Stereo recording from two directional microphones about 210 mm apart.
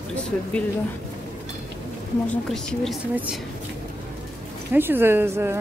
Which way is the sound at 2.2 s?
5° left (ahead or behind).